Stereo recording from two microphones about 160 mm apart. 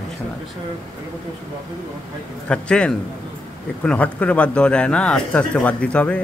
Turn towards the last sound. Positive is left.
turn(degrees=10)  # may be behind; listen again after turning